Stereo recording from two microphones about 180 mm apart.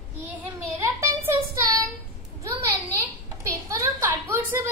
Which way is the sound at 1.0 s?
15° right (ahead or behind).